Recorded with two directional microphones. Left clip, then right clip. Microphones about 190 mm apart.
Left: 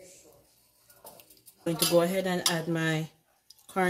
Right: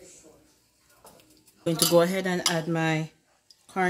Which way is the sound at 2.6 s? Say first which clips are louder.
Right 3 dB; 20° right (ahead or behind).